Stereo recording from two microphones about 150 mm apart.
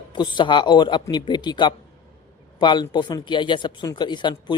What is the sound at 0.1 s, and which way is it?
A man's voice, 30° left (ahead or behind).